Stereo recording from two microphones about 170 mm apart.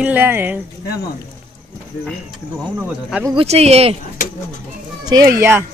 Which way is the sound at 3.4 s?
40° right (ahead or behind).